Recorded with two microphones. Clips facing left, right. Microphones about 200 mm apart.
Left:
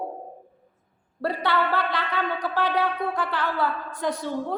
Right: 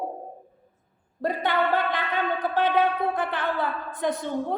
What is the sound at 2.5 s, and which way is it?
A woman's voice, 20° right (ahead or behind).